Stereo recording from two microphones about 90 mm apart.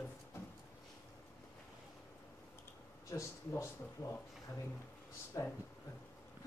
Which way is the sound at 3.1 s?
35° left (ahead or behind).